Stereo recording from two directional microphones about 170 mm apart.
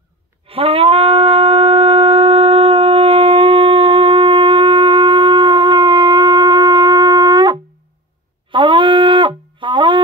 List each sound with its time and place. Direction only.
0.5 s shofar: 35° right (ahead or behind)